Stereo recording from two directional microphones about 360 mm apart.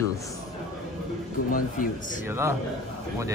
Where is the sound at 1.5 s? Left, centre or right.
Left.